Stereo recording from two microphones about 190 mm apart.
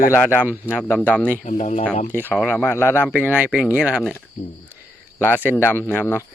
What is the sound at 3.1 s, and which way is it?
Speech, 10° right (ahead or behind).